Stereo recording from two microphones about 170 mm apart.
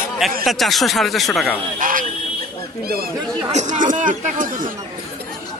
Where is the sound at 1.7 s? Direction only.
55° right (ahead or behind).